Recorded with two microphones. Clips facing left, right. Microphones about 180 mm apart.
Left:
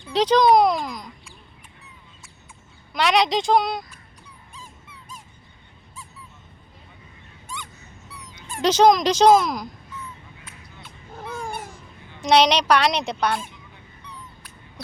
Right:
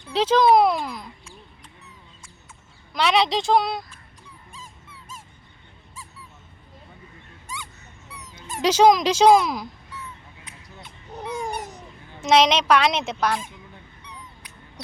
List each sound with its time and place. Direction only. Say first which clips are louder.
0.1 s speech: left 1 dB; 5° right (ahead or behind)
2.9 s speech: left 1 dB; centre (ahead or behind)
8.6 s speech: even; 5° right (ahead or behind)
11.1 s a sound: right 3 dB; 20° right (ahead or behind)
12.2 s speech: even; 5° right (ahead or behind)